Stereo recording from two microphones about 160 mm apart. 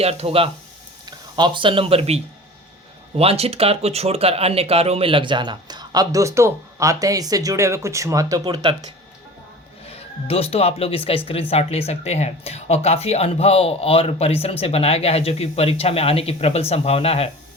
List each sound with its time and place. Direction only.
0.0 s speech: 40° right (ahead or behind)
9.8 s speech: 40° left (ahead or behind)